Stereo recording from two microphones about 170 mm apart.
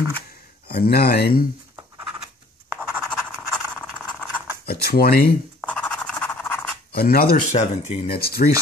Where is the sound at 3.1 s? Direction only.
5° left (ahead or behind).